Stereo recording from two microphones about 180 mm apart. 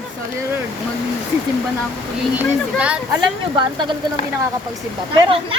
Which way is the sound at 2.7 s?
5° right (ahead or behind).